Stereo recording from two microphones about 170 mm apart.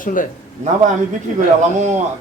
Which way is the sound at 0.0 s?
50° left (ahead or behind).